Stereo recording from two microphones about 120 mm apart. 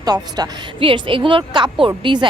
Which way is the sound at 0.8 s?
45° right (ahead or behind).